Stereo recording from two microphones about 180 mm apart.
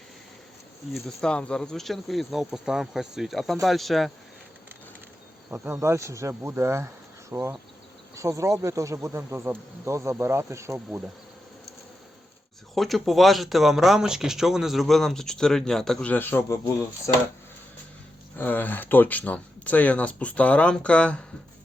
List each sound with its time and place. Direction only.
0.9 s speech: 5° left (ahead or behind)
5.5 s speech: 10° right (ahead or behind)
12.7 s speech: centre (ahead or behind)
18.3 s speech: 10° left (ahead or behind)